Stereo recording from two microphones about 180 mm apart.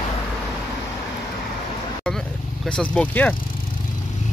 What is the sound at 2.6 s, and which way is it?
Speech, 5° left (ahead or behind).